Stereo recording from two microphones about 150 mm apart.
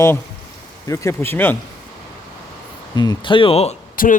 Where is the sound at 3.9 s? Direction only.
70° left (ahead or behind).